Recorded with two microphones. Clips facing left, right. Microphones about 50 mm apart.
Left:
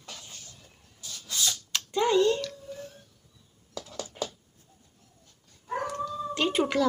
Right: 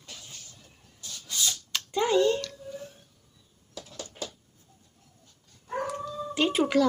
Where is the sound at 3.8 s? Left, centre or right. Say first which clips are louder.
Left 4 dB; left.